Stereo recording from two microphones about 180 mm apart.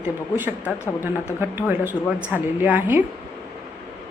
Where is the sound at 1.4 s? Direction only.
10° right (ahead or behind).